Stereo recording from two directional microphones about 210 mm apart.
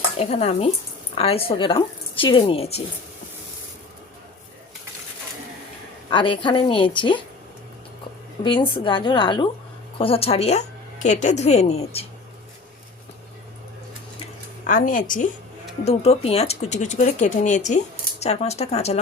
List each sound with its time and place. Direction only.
0.2 s speech: 30° left (ahead or behind)
6.1 s speech: 25° left (ahead or behind)
8.4 s speech: 25° left (ahead or behind)
14.7 s speech: 40° left (ahead or behind)